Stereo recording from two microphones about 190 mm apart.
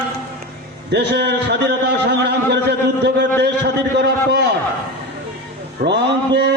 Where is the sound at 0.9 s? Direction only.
60° right (ahead or behind).